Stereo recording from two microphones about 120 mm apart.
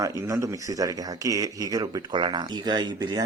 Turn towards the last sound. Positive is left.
turn(degrees=-35)  # may be behind; listen again after turning